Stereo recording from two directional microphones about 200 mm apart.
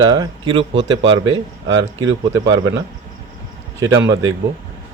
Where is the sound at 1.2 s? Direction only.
70° right (ahead or behind).